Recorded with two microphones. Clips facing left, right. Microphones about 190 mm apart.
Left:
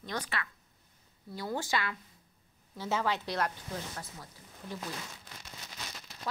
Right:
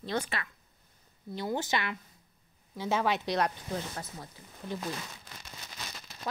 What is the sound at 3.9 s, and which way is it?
Speech, 25° right (ahead or behind).